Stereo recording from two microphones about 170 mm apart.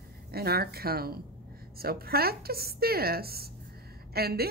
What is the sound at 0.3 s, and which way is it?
Speech, 65° right (ahead or behind).